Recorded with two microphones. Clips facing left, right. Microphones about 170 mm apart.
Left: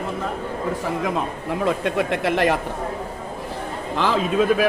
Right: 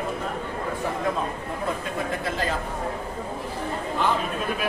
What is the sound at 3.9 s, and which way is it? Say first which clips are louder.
Speech: left 6 dB; 90° left.